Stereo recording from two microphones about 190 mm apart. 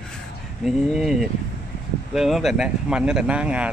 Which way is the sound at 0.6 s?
Centre (ahead or behind).